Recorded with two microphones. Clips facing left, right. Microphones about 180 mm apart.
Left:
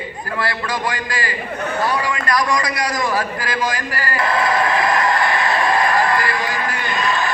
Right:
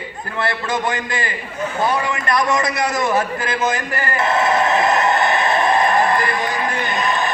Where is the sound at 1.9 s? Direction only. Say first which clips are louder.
Even; 25° right (ahead or behind).